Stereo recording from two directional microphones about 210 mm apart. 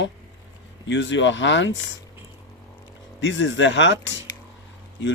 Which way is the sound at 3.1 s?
60° left (ahead or behind).